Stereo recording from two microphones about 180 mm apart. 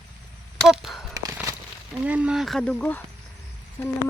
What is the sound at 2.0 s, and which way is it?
Speech, 5° right (ahead or behind).